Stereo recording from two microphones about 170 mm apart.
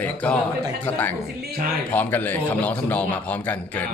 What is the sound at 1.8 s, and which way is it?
A man's voice, 10° left (ahead or behind).